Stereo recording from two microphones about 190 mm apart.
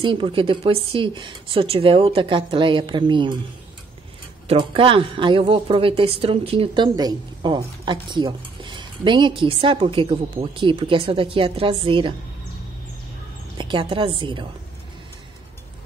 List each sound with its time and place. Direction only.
0.0 s a woman's voice: 25° right (ahead or behind)
4.5 s a woman's voice: 30° right (ahead or behind)
13.6 s a woman's voice: 25° right (ahead or behind)